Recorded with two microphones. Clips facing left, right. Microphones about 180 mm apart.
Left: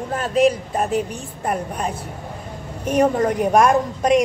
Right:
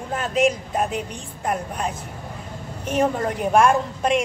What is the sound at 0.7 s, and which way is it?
Speech, centre (ahead or behind).